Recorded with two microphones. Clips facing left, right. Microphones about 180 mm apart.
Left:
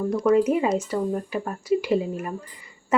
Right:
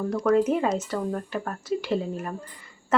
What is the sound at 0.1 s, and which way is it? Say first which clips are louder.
Speech: left 2 dB; 10° left (ahead or behind).